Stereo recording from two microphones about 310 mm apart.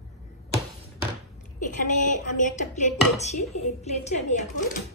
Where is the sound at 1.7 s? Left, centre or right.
Left.